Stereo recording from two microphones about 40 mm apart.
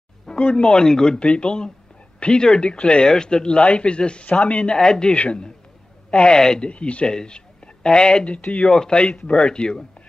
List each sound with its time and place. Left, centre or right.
0.3 s speech: left
1.2 s speech: left
5.1 s a man's voice: left